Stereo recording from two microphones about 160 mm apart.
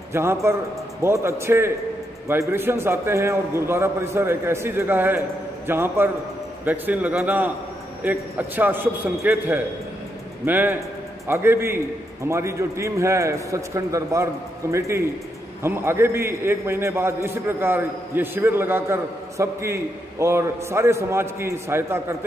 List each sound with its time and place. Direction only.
0.1 s a man's voice: 15° right (ahead or behind)